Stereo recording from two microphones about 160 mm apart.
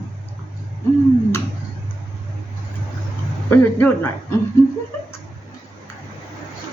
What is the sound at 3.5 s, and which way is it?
Speech, 10° left (ahead or behind).